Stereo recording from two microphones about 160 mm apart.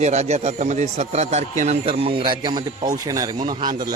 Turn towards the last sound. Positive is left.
turn(degrees=-25)  # may be behind; listen again after turning